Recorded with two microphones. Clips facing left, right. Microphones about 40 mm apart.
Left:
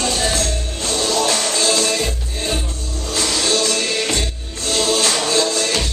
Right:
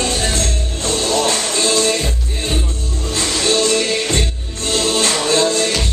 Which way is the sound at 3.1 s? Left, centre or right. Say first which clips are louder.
Right 2 dB; right.